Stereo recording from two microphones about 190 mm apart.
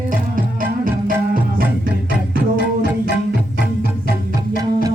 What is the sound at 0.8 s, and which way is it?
Music, 45° right (ahead or behind).